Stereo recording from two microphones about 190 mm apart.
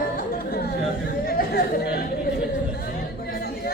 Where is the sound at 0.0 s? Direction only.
50° left (ahead or behind).